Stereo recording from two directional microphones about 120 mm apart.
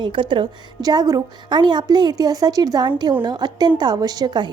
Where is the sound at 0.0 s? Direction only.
45° right (ahead or behind).